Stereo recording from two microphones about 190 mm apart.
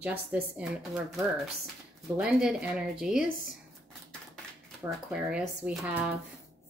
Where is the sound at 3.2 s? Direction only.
45° left (ahead or behind).